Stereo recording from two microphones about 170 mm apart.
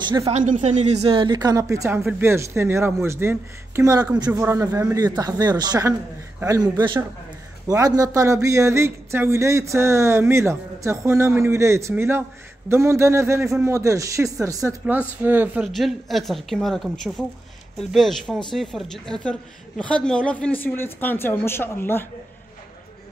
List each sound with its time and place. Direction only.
0.0 s a man's voice: 25° right (ahead or behind)
0.3 s a woman's voice: 45° right (ahead or behind); by 15.7 s 10° right (ahead or behind)
15.7 s speech: centre (ahead or behind)